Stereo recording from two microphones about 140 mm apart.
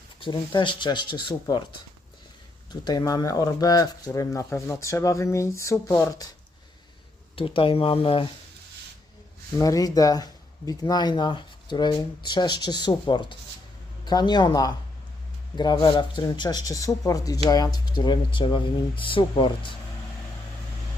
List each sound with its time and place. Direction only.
0.2 s speech: 35° left (ahead or behind)
2.8 s speech: 25° left (ahead or behind)
7.3 s speech: 40° left (ahead or behind)
9.6 s speech: 25° left (ahead or behind)